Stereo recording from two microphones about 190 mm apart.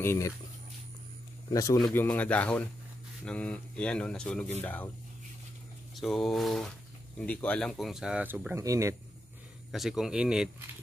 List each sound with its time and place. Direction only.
0.0 s speech: 15° left (ahead or behind)
1.5 s speech: 15° left (ahead or behind)
5.9 s speech: centre (ahead or behind); by 8.9 s 15° right (ahead or behind)
9.7 s speech: centre (ahead or behind)